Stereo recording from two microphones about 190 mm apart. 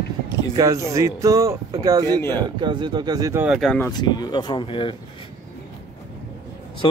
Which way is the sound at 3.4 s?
Centre (ahead or behind).